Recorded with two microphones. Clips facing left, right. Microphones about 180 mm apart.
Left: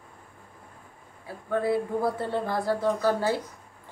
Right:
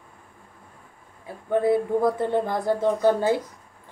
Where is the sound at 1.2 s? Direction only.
20° right (ahead or behind).